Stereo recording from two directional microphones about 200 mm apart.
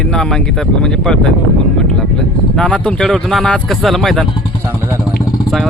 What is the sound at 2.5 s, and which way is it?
Speech, 5° left (ahead or behind).